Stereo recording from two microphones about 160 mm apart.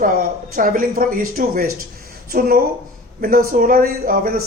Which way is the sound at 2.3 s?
70° right (ahead or behind).